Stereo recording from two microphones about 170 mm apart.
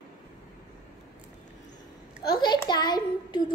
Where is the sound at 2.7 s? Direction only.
25° left (ahead or behind).